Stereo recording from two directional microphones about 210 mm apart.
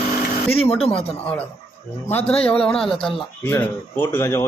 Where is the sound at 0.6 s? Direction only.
30° left (ahead or behind).